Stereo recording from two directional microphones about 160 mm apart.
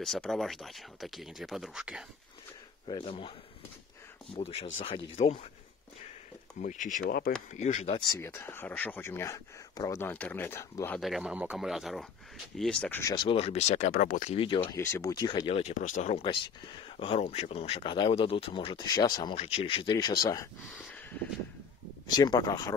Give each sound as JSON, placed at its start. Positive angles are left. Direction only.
{"t": 0.0, "sound": "speech", "side_deg": 0}
{"t": 2.9, "sound": "speech", "side_deg": 30}
{"t": 6.6, "sound": "speech", "side_deg": 55}
{"t": 7.5, "sound": "speech", "side_deg": 50}
{"t": 8.0, "sound": "speech", "side_deg": 20}
{"t": 11.0, "sound": "speech", "side_deg": 0}
{"t": 13.0, "sound": "speech", "side_deg": 30}
{"t": 13.9, "sound": "speech", "side_deg": 60}
{"t": 14.3, "sound": "speech", "side_deg": 35}
{"t": 14.8, "sound": "speech", "side_deg": 20}
{"t": 15.7, "sound": "speech", "side_deg": 50}
{"t": 19.3, "sound": "speech", "side_deg": 40}
{"t": 22.1, "sound": "speech", "side_deg": 25}